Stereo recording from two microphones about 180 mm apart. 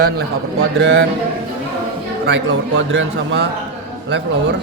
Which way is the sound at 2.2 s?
80° right.